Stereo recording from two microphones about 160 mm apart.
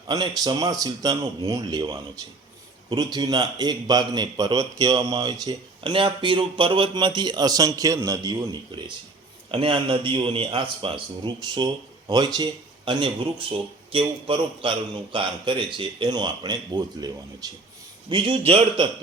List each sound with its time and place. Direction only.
0.1 s a man's voice: 25° right (ahead or behind)
9.5 s speech: 35° right (ahead or behind)